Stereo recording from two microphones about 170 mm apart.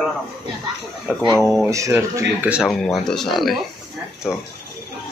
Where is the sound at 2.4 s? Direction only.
5° right (ahead or behind).